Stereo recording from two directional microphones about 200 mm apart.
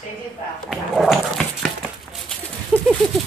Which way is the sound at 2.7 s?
5° right (ahead or behind).